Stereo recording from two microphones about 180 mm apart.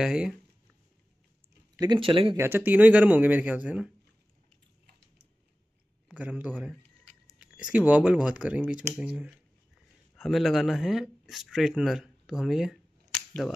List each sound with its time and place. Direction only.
0.0 s speech: 5° right (ahead or behind)
1.8 s speech: 25° right (ahead or behind)
2.3 s speech: 10° right (ahead or behind)
6.0 s a man's voice: 10° right (ahead or behind)